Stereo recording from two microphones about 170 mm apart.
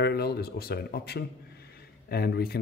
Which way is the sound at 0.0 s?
70° left (ahead or behind).